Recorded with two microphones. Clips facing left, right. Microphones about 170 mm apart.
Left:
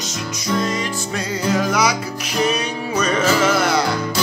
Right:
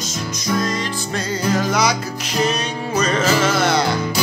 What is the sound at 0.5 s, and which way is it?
Music, 35° right (ahead or behind).